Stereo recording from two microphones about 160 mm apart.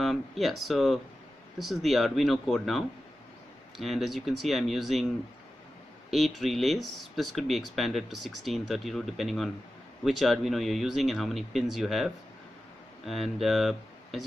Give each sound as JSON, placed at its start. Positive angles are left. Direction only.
{"t": 0.0, "sound": "speech", "side_deg": 0}